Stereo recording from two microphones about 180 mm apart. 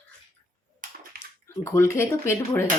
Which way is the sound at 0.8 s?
45° right (ahead or behind).